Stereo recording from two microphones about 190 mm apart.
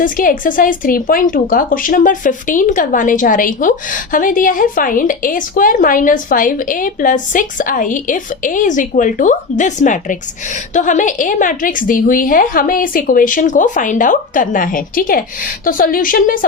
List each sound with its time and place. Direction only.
0.0 s speech: 45° left (ahead or behind)